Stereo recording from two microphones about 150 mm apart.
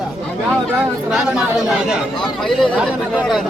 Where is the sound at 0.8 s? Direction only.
5° right (ahead or behind).